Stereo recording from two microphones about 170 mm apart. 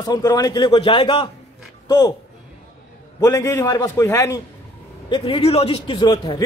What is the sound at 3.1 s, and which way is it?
A man's voice, 20° left (ahead or behind).